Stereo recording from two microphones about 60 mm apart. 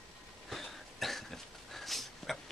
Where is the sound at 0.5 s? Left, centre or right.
Centre.